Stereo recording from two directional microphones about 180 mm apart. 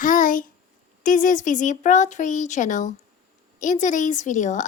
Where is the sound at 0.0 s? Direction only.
50° left (ahead or behind).